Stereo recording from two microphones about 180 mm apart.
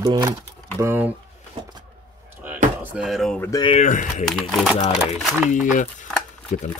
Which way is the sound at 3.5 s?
30° left (ahead or behind).